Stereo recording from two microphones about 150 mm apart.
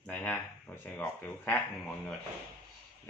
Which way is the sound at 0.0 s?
10° left (ahead or behind).